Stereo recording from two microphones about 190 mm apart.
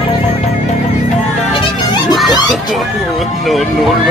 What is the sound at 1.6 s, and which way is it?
Children playing, 25° left (ahead or behind).